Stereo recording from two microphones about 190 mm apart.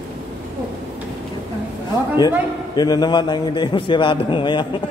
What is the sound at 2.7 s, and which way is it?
A man's voice, 20° left (ahead or behind).